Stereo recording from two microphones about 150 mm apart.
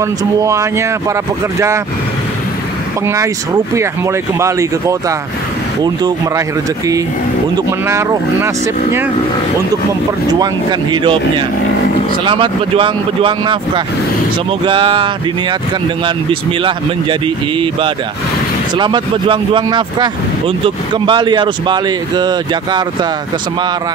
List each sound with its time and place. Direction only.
0.0 s speech: 20° right (ahead or behind)
3.1 s speech: 20° right (ahead or behind)
7.5 s speech: 20° right (ahead or behind)
10.4 s speech: 30° right (ahead or behind)
16.6 s speech: 35° right (ahead or behind)